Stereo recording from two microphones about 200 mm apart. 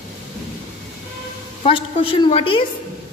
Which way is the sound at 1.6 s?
25° left (ahead or behind).